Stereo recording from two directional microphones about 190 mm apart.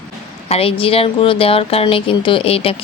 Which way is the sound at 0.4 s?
30° left (ahead or behind).